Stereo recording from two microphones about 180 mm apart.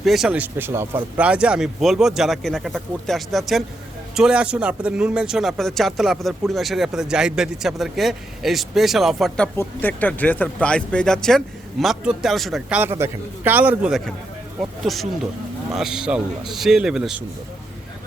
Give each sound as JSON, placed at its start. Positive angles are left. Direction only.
{"t": 0.0, "sound": "a man's voice", "side_deg": 0}